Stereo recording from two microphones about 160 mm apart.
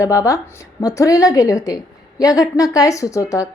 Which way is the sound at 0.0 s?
20° left (ahead or behind).